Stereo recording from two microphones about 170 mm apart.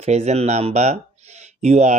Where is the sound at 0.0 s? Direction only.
40° right (ahead or behind).